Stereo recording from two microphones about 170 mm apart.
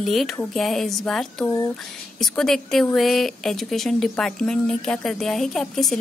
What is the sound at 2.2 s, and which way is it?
A woman's voice, centre (ahead or behind).